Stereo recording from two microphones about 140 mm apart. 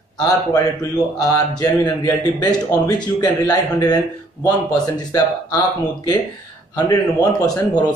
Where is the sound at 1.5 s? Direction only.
30° left (ahead or behind).